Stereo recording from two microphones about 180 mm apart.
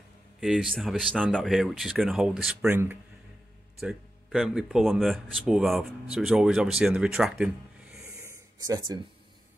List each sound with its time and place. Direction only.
0.4 s speech: centre (ahead or behind)
3.8 s speech: 5° right (ahead or behind)
8.2 s a sound: 15° right (ahead or behind)